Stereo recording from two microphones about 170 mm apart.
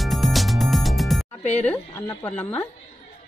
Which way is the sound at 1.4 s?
45° left (ahead or behind).